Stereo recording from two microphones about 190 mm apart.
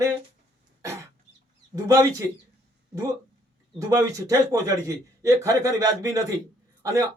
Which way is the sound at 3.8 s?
20° right (ahead or behind).